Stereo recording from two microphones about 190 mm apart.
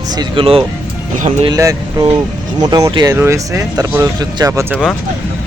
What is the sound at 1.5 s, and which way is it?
Speech, 20° right (ahead or behind).